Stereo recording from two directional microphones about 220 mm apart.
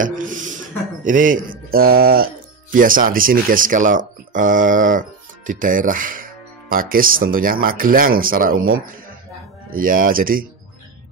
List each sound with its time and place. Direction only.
0.0 s speech: 35° right (ahead or behind)
1.0 s mantra: 35° right (ahead or behind)
2.7 s speech: 40° right (ahead or behind)